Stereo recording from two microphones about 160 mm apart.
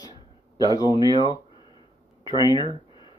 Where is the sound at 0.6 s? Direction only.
25° left (ahead or behind).